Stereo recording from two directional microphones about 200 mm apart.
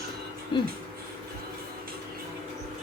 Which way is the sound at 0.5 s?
25° left (ahead or behind).